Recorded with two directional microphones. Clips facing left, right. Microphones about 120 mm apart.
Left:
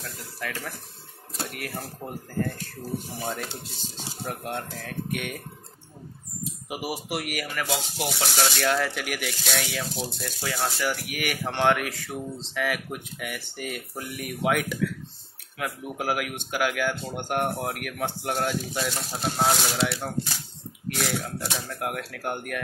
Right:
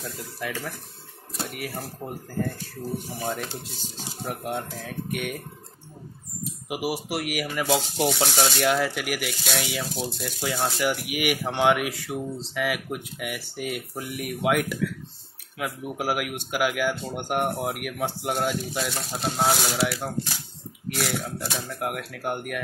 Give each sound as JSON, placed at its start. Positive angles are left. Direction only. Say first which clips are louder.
{"t": 0.4, "sound": "speech", "louder": "right 2 dB", "side_deg": -10}
{"t": 6.7, "sound": "speech", "louder": "right 3 dB", "side_deg": -5}
{"t": 7.5, "sound": "speech", "louder": "right 6 dB", "side_deg": -15}
{"t": 10.2, "sound": "speech", "louder": "right 2 dB", "side_deg": -15}